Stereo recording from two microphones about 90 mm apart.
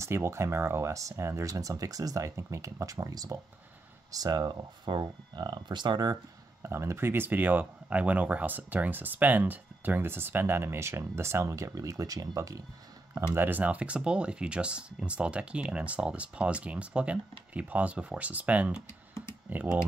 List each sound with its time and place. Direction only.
0.0 s speech: 30° right (ahead or behind); by 6.1 s 55° right (ahead or behind)
6.6 s speech: 30° right (ahead or behind)
13.3 s speech: 20° right (ahead or behind)